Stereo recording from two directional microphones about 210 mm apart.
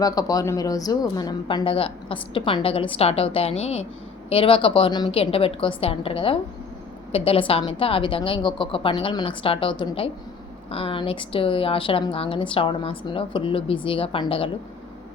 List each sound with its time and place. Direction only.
0.0 s a woman's voice: 15° left (ahead or behind)